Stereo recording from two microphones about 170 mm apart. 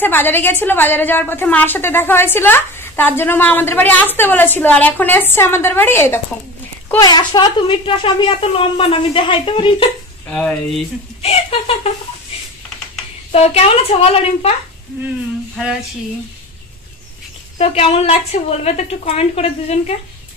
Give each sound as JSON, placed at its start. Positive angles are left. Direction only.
{"t": 0.0, "sound": "a woman's voice", "side_deg": 10}
{"t": 7.0, "sound": "a woman's voice", "side_deg": 25}
{"t": 11.2, "sound": "a woman's voice", "side_deg": 35}
{"t": 13.3, "sound": "a woman's voice", "side_deg": 35}
{"t": 17.6, "sound": "a woman's voice", "side_deg": 35}